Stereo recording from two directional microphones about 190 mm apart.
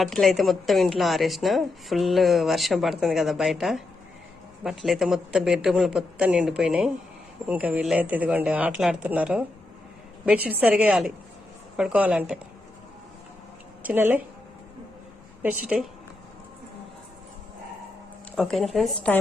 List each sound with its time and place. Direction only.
0.0 s a woman's voice: centre (ahead or behind)
13.8 s speech: 10° right (ahead or behind)
15.7 s a woman's voice: 5° right (ahead or behind)
18.3 s a woman's voice: centre (ahead or behind)